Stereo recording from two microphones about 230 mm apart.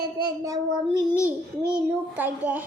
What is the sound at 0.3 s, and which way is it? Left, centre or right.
Child singing, centre.